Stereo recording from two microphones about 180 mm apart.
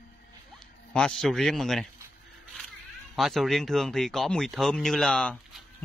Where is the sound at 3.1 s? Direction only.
Centre (ahead or behind).